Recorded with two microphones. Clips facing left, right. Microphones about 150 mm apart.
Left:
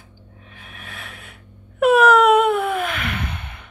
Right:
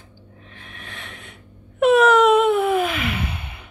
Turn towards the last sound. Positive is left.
turn(degrees=-10)  # may be behind; listen again after turning